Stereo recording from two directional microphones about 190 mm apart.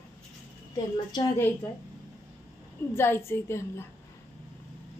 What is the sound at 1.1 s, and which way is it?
Speech, 20° left (ahead or behind).